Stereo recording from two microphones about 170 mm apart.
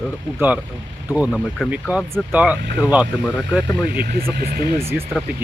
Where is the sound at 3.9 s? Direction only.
60° right (ahead or behind).